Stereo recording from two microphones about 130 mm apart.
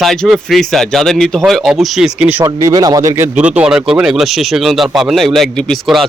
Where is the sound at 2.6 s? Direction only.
30° right (ahead or behind).